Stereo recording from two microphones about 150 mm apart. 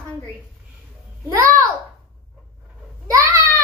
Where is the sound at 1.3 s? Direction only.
20° right (ahead or behind).